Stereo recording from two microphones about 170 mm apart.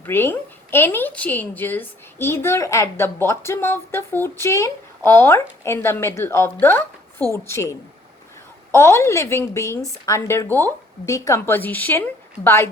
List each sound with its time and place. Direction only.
0.0 s a woman's voice: 10° left (ahead or behind)